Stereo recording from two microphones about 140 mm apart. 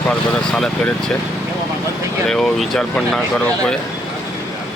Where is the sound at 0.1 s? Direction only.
10° left (ahead or behind).